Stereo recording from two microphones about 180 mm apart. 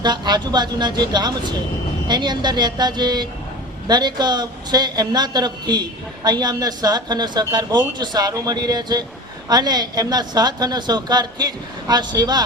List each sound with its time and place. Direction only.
0.0 s a woman's voice: 25° right (ahead or behind)